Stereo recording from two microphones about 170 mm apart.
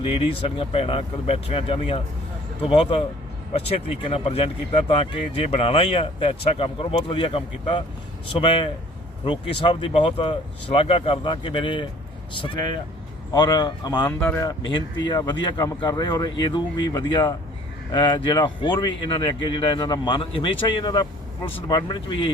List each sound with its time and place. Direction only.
0.0 s speech: 35° left (ahead or behind)
14.0 s speech: 10° left (ahead or behind)
14.7 s speech: 25° left (ahead or behind)